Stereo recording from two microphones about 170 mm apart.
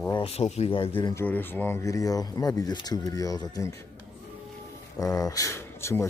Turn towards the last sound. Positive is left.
turn(degrees=15)  # may be behind; listen again after turning